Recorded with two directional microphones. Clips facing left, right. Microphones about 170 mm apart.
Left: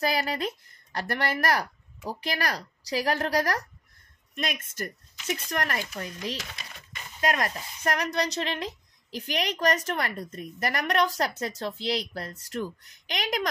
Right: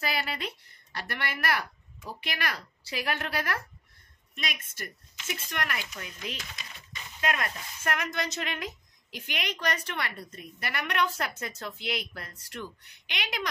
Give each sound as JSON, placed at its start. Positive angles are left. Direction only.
{"t": 0.0, "sound": "a woman's voice", "side_deg": 40}